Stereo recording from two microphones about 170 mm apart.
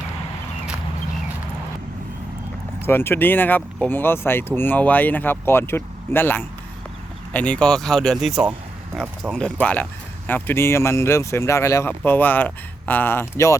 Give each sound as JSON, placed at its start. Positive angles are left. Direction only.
{"t": 2.8, "sound": "speech", "side_deg": 15}
{"t": 9.3, "sound": "speech", "side_deg": 5}